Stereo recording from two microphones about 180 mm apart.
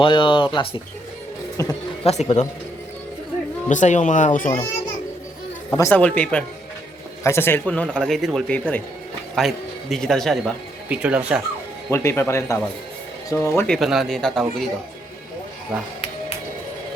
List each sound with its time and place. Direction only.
0.0 s speech: 30° left (ahead or behind)
1.6 s a man's voice: 20° left (ahead or behind)
2.0 s speech: 35° left (ahead or behind)
3.7 s speech: 45° left (ahead or behind)
5.7 s a man's voice: 15° left (ahead or behind); by 11.4 s 5° right (ahead or behind)
11.9 s a man's voice: 15° left (ahead or behind)
13.6 s speech: centre (ahead or behind)